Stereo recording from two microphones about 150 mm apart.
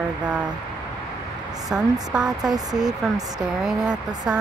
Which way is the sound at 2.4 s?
25° right (ahead or behind).